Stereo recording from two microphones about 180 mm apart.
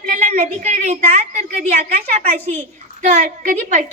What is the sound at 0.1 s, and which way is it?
A woman's voice, 45° right (ahead or behind).